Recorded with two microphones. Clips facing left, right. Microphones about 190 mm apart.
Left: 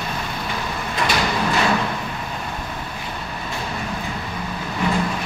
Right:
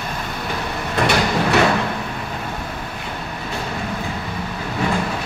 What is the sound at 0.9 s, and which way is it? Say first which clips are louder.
Train: right 4 dB; 70° right (ahead or behind).